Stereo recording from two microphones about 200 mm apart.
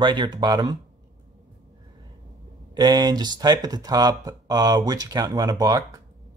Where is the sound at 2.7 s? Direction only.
20° right (ahead or behind).